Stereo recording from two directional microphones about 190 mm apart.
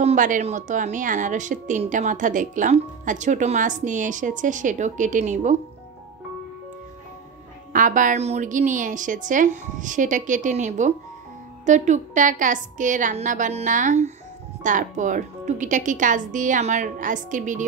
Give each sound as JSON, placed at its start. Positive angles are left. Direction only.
{"t": 0.0, "sound": "a woman's voice", "side_deg": -40}
{"t": 7.7, "sound": "a woman's voice", "side_deg": -45}